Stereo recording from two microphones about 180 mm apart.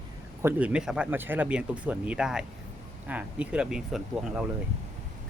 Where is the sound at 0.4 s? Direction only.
5° right (ahead or behind).